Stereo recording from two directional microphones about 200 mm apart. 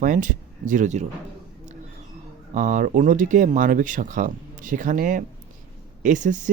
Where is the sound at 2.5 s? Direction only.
40° right (ahead or behind).